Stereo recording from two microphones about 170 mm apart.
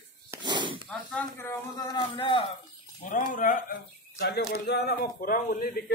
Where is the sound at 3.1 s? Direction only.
50° left (ahead or behind).